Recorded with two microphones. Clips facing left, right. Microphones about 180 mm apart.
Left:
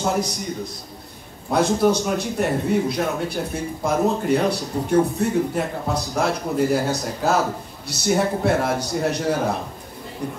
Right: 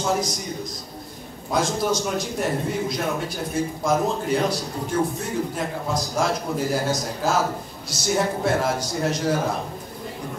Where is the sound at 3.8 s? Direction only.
60° left (ahead or behind).